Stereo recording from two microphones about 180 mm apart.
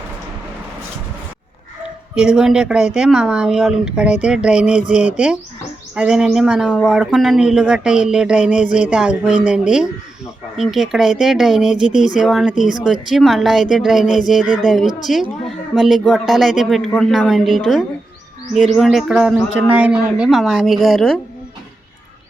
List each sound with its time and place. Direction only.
2.1 s speech: 5° right (ahead or behind)
14.4 s speech: 45° left (ahead or behind)
15.0 s speech: centre (ahead or behind)